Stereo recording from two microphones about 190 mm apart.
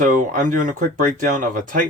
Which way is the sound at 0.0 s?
45° right (ahead or behind).